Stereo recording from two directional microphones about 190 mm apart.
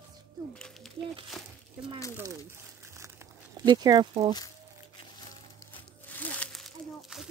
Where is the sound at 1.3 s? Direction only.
Centre (ahead or behind).